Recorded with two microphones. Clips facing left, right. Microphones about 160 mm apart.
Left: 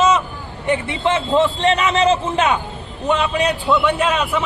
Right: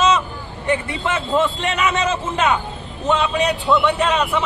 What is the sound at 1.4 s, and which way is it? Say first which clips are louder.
Speech: left 3 dB; 30° left (ahead or behind).